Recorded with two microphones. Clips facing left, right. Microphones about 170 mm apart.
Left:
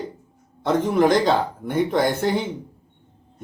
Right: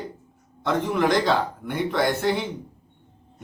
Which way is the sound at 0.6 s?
40° left (ahead or behind).